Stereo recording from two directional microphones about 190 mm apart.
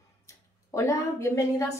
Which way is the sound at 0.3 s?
15° left (ahead or behind).